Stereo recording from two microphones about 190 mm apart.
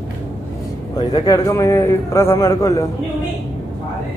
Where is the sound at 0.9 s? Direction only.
20° left (ahead or behind).